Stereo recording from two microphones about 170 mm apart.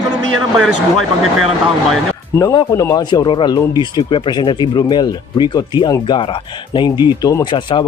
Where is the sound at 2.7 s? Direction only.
20° left (ahead or behind).